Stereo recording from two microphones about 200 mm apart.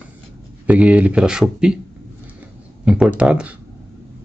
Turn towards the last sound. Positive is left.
turn(degrees=-5)  # may be behind; listen again after turning